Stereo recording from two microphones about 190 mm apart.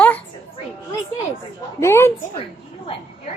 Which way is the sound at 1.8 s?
15° left (ahead or behind).